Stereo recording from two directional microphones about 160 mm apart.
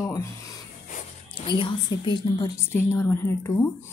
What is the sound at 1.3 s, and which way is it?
A woman's voice, 35° left (ahead or behind).